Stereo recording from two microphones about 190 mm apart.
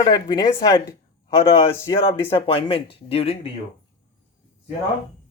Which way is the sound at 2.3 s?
30° left (ahead or behind).